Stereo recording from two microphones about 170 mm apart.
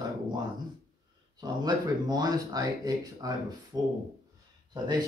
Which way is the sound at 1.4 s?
25° right (ahead or behind).